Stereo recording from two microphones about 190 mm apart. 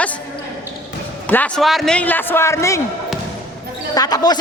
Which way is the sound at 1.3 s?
5° left (ahead or behind).